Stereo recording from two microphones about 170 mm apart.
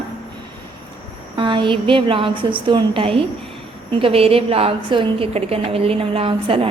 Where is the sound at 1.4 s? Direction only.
30° right (ahead or behind).